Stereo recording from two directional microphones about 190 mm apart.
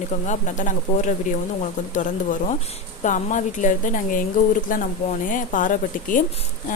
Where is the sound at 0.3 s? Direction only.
40° left (ahead or behind).